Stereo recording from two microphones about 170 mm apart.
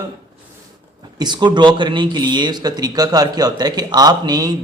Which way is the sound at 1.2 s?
25° right (ahead or behind).